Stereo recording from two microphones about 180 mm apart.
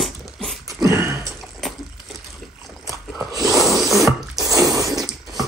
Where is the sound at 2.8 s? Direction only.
20° right (ahead or behind).